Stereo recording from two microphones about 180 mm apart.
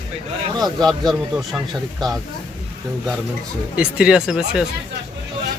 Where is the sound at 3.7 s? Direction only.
5° right (ahead or behind).